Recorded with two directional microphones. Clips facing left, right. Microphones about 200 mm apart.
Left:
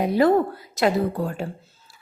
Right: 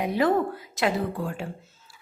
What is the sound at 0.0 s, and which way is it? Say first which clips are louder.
A woman's voice: left 5 dB; 35° left (ahead or behind).